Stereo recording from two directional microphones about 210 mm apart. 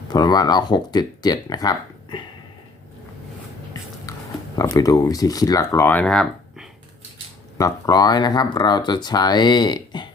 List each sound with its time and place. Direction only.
0.1 s speech: 20° left (ahead or behind)
4.1 s biting: 15° left (ahead or behind)
4.5 s speech: 15° left (ahead or behind)
7.6 s speech: 20° left (ahead or behind)